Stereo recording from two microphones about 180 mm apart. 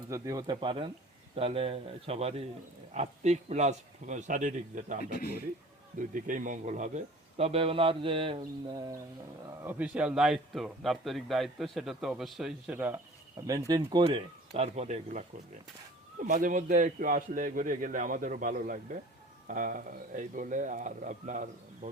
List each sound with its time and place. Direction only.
0.1 s a man's voice: 20° right (ahead or behind); by 4.9 s 45° right (ahead or behind)
6.0 s a man's voice: 45° right (ahead or behind); by 9.0 s 20° right (ahead or behind)
9.6 s speech: 5° right (ahead or behind)
13.5 s a man's voice: 20° right (ahead or behind); by 15.2 s 40° right (ahead or behind)
16.2 s a man's voice: 45° right (ahead or behind)